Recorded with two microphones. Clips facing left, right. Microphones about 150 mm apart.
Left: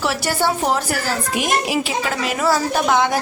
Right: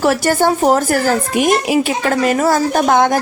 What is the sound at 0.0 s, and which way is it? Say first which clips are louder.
Speech: right 7 dB; 45° right (ahead or behind).